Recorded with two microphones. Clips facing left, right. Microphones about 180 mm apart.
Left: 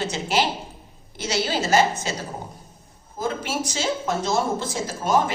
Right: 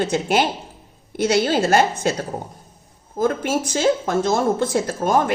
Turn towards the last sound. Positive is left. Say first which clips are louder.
# right 3 dB
turn(degrees=-55)  # may be behind; listen again after turning